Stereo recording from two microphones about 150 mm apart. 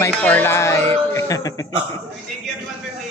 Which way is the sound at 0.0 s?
15° left (ahead or behind).